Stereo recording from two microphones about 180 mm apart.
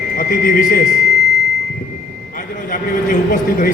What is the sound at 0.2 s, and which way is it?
Speech, 50° left (ahead or behind).